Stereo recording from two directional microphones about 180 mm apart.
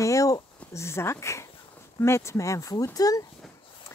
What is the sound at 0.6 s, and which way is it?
A child's voice, 15° left (ahead or behind).